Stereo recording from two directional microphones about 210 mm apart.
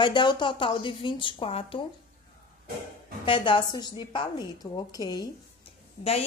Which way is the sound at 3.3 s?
25° left (ahead or behind).